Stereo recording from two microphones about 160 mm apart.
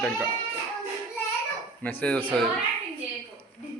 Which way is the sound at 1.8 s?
10° left (ahead or behind).